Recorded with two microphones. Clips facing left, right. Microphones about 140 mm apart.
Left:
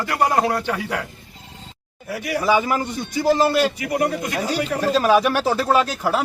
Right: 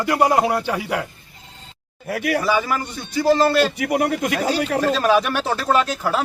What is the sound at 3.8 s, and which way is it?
Speech, 75° right (ahead or behind).